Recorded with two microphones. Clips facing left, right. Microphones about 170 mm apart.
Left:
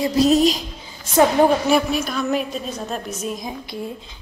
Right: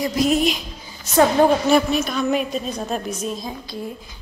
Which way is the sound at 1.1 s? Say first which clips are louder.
Even; 15° left (ahead or behind).